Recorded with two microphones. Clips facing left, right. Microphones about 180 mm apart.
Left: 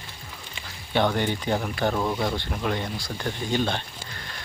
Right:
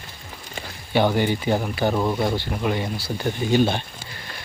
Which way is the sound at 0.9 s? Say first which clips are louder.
Right 4 dB; 5° right (ahead or behind).